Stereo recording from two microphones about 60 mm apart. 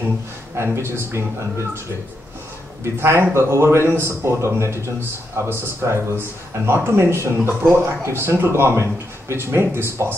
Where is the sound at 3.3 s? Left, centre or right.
Right.